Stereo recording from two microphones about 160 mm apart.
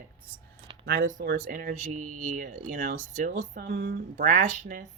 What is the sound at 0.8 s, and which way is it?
Speech, 80° right.